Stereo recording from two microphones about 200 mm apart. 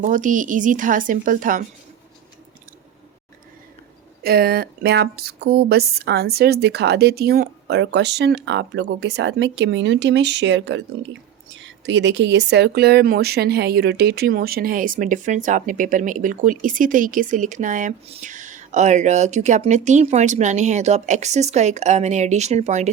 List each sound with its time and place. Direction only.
0.0 s a woman's voice: 40° right (ahead or behind)
4.2 s speech: 50° right (ahead or behind); by 22.9 s 35° right (ahead or behind)